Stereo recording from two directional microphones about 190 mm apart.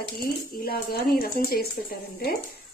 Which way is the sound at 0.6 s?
50° left (ahead or behind).